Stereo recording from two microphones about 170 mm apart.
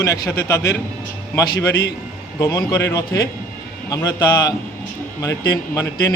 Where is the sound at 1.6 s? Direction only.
75° left (ahead or behind).